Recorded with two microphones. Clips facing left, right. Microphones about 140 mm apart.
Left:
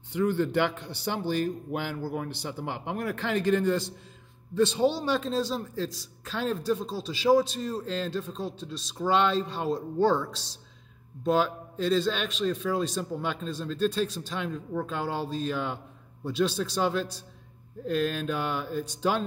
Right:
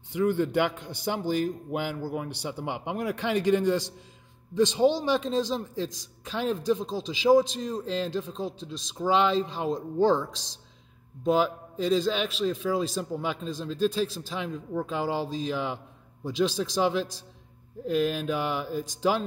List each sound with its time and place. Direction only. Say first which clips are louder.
0.1 s a man's voice: right 1 dB; 10° right (ahead or behind)
6.3 s a man's voice: right 2 dB; 15° right (ahead or behind)